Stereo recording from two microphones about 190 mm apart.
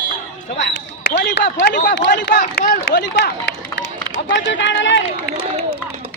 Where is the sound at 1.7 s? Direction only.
45° left (ahead or behind).